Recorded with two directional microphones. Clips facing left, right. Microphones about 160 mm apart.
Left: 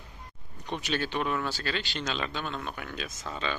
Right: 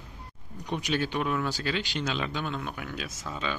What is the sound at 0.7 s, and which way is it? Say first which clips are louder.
A man's voice: right 2 dB; 10° right (ahead or behind).